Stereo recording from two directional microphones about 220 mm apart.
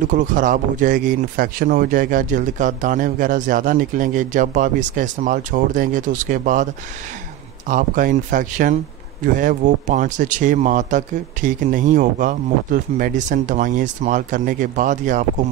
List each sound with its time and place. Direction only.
0.1 s speech: 35° right (ahead or behind)